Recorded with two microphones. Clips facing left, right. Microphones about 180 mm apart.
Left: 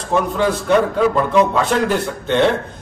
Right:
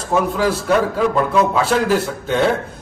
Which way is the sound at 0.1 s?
5° right (ahead or behind).